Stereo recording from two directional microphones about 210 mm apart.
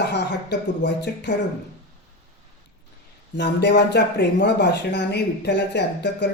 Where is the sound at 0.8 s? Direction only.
55° left (ahead or behind).